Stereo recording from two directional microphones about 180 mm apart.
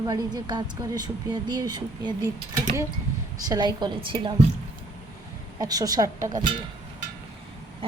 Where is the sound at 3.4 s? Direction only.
20° right (ahead or behind).